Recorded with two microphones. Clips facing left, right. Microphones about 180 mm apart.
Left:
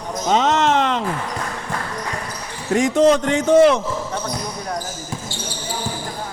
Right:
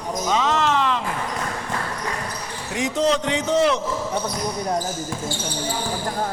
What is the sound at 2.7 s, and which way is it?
A man's voice, 50° left (ahead or behind).